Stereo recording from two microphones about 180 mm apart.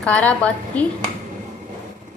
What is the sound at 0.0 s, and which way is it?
Dishes, 5° left (ahead or behind).